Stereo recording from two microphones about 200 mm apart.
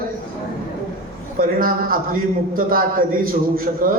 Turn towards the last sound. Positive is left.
turn(degrees=-45)  # may be behind; listen again after turning